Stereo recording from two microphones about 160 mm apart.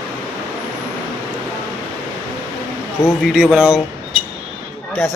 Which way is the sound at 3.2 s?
5° right (ahead or behind).